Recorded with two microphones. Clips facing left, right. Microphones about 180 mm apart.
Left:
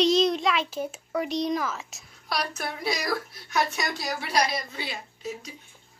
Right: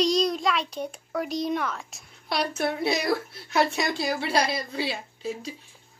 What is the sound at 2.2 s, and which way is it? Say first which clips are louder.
A woman's voice: right 5 dB; 25° right (ahead or behind).